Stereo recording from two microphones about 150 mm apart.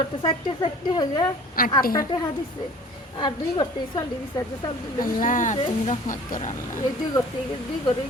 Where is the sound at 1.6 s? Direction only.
70° left (ahead or behind).